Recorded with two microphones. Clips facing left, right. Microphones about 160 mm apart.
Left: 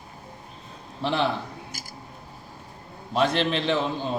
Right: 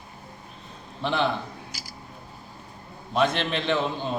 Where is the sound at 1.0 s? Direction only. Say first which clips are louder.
Even; 5° left (ahead or behind).